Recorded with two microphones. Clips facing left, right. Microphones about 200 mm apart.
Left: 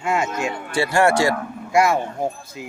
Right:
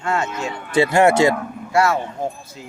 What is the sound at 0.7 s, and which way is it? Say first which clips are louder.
Speech: right 4 dB; 20° right (ahead or behind).